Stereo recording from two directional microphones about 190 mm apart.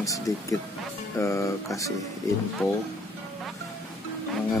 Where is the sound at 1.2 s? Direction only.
15° left (ahead or behind).